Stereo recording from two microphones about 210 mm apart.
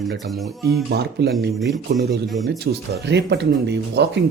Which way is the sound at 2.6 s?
50° right (ahead or behind).